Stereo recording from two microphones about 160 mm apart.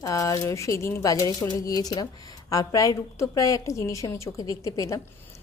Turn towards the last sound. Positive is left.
turn(degrees=20)  # may be behind; listen again after turning